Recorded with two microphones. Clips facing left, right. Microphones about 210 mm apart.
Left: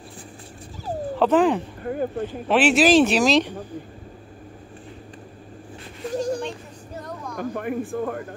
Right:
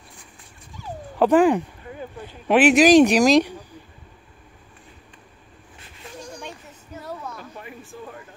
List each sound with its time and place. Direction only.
1.2 s speech: 10° right (ahead or behind)
1.8 s speech: 50° left (ahead or behind)
2.4 s speech: 15° right (ahead or behind)
7.0 s a sound: 5° right (ahead or behind)
7.3 s speech: 55° left (ahead or behind)